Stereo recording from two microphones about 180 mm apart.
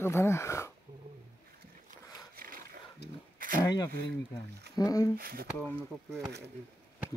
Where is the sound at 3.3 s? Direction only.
50° right (ahead or behind).